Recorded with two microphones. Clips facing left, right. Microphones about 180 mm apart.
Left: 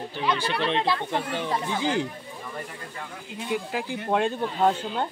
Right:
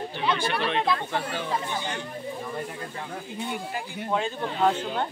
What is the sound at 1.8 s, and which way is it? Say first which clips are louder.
Speech: left 7 dB; 90° left.